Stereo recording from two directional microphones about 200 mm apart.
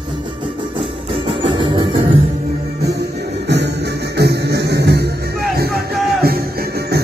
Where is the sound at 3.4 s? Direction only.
55° right (ahead or behind).